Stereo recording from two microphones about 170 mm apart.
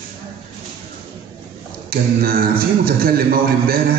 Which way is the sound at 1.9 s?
60° right (ahead or behind).